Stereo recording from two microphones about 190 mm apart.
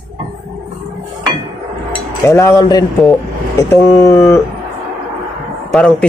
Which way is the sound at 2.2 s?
15° left (ahead or behind).